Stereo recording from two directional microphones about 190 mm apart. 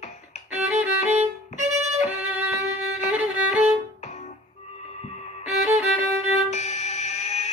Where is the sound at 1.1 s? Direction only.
35° right (ahead or behind).